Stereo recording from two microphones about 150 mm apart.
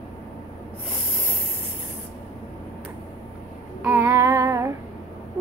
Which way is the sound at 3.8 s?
15° right (ahead or behind).